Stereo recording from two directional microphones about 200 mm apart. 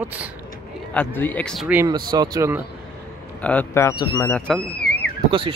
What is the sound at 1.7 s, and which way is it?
Speech, 10° right (ahead or behind).